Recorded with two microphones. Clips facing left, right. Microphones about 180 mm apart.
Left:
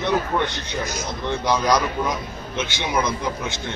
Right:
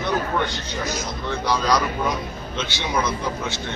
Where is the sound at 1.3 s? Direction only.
20° left (ahead or behind).